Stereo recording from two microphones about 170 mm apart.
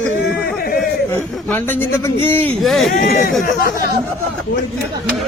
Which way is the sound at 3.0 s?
60° left (ahead or behind).